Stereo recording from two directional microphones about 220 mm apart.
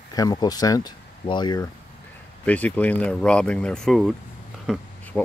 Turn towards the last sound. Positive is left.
turn(degrees=5)  # may be behind; listen again after turning